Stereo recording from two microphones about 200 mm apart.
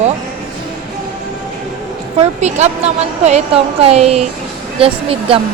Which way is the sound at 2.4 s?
35° right (ahead or behind).